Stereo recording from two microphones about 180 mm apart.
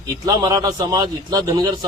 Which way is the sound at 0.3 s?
20° right (ahead or behind).